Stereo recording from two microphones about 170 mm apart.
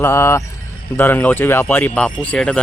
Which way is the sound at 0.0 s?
15° left (ahead or behind).